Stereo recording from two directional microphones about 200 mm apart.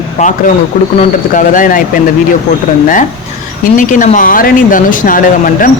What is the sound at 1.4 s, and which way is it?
Speech, 40° left (ahead or behind).